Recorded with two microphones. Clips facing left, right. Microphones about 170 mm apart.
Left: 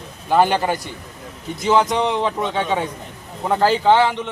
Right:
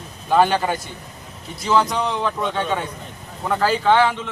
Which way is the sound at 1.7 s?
25° left (ahead or behind).